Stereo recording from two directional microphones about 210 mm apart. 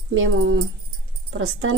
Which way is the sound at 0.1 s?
70° right (ahead or behind).